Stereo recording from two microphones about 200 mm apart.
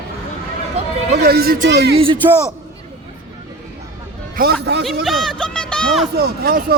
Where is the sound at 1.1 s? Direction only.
55° right (ahead or behind).